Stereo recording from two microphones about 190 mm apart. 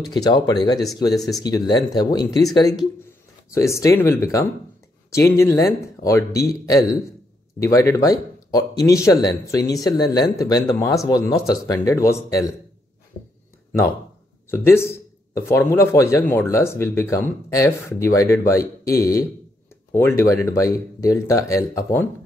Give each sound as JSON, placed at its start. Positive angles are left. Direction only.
{"t": 0.0, "sound": "speech", "side_deg": 20}
{"t": 14.5, "sound": "speech", "side_deg": 15}